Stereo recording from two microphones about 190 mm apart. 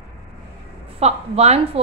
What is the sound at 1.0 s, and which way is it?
Speech, 35° right (ahead or behind).